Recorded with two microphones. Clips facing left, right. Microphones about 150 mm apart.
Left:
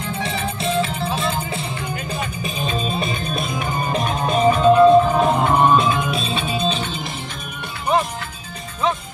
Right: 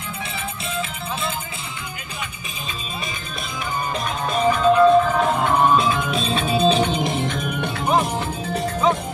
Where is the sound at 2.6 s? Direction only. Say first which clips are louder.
Left 8 dB; 30° left (ahead or behind); by 7.2 s 20° right (ahead or behind).